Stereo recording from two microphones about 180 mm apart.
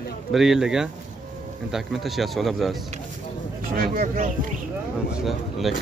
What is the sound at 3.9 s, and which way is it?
Speech, 50° right (ahead or behind).